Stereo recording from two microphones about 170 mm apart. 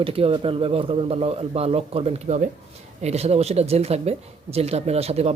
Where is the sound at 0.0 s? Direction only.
35° right (ahead or behind).